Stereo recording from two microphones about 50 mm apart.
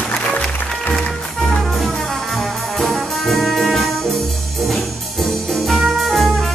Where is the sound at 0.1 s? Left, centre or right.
Centre.